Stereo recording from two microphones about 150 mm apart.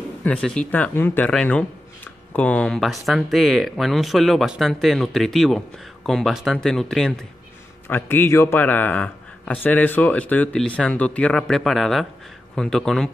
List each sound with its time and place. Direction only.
0.2 s a man's voice: 10° left (ahead or behind)
7.9 s a man's voice: 15° left (ahead or behind)